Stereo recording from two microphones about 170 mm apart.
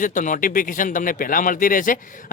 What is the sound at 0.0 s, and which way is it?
Speech, 50° left (ahead or behind).